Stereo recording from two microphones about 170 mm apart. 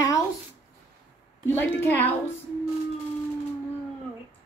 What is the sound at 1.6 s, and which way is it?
Speech, 10° left (ahead or behind).